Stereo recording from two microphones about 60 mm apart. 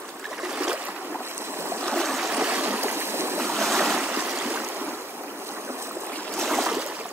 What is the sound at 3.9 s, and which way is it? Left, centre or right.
Stream, right.